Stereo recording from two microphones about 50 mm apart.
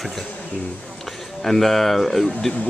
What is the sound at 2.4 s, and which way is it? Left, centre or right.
Speech, centre.